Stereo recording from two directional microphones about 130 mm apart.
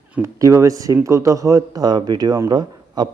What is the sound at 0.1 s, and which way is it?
Speech, 20° right (ahead or behind).